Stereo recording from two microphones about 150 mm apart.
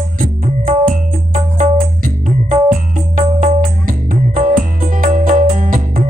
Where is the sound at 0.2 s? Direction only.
65° right (ahead or behind).